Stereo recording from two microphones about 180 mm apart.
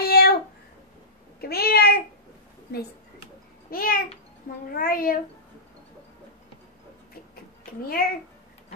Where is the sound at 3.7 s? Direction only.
55° left (ahead or behind).